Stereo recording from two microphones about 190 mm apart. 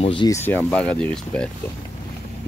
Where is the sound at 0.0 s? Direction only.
25° left (ahead or behind).